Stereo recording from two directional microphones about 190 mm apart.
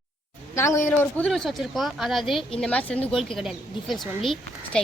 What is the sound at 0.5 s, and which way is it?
A woman's voice, 15° left (ahead or behind).